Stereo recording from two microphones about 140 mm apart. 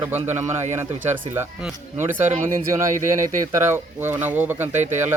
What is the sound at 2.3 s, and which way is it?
Speech, 75° right (ahead or behind).